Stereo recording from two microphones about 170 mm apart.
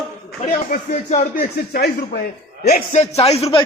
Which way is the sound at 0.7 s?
40° left (ahead or behind).